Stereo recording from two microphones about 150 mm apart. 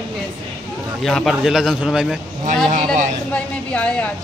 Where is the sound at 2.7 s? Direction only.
55° right (ahead or behind).